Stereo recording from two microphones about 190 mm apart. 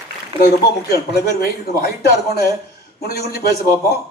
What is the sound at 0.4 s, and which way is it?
A man's voice, 55° left (ahead or behind).